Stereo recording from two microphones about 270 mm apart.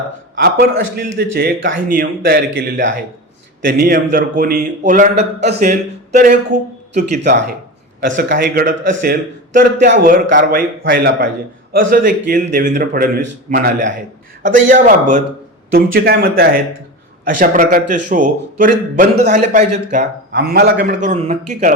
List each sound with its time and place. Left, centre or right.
0.3 s a man's voice: right